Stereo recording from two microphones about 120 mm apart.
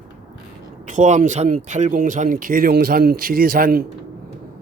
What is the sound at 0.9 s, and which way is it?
Speech, 85° right.